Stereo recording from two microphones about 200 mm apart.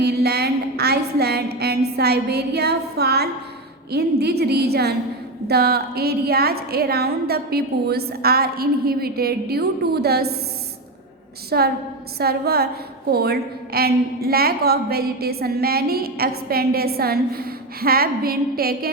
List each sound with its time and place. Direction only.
0.0 s a sound: 55° right (ahead or behind)
2.0 s a woman's voice: 55° right (ahead or behind)
11.5 s a woman's voice: 50° right (ahead or behind)